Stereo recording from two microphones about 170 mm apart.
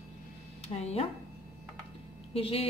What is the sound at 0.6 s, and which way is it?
Speech, 40° left (ahead or behind).